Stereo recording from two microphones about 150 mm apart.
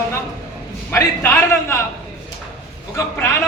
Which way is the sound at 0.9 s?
15° left (ahead or behind).